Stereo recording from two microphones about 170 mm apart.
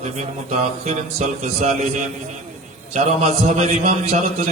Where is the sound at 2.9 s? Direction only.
40° right (ahead or behind).